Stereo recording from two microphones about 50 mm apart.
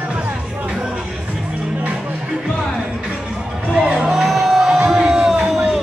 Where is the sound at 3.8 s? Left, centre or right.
Centre.